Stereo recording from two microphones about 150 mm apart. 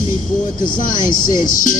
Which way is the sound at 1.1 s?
30° left (ahead or behind).